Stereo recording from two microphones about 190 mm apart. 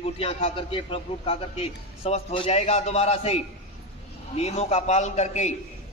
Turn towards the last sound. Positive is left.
turn(degrees=35)  # may be behind; listen again after turning